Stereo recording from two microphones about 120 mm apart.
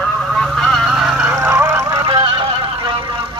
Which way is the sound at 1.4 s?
20° right (ahead or behind).